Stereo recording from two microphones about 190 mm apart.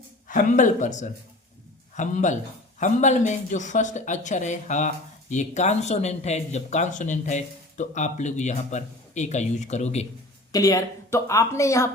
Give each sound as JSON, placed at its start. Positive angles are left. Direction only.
{"t": 0.3, "sound": "speech", "side_deg": 45}
{"t": 10.5, "sound": "speech", "side_deg": 15}